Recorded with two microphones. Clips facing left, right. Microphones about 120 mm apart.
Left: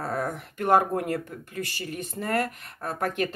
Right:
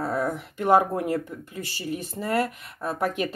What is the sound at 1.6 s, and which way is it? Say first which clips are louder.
Speech: right 1 dB; 55° left (ahead or behind).